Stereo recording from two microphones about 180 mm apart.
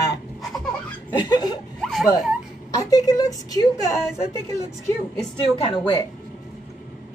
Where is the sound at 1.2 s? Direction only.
25° left (ahead or behind).